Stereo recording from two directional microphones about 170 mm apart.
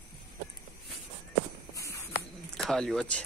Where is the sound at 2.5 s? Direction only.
5° left (ahead or behind).